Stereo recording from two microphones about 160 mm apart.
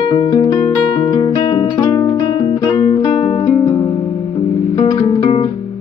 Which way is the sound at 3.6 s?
25° left (ahead or behind).